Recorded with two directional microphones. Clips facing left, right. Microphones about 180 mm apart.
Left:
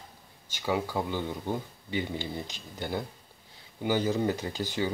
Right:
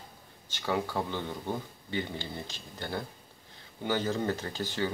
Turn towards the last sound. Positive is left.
turn(degrees=15)  # may be behind; listen again after turning